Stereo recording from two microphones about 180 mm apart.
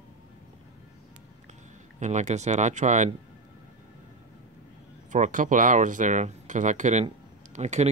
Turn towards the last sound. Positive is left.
turn(degrees=-40)  # may be behind; listen again after turning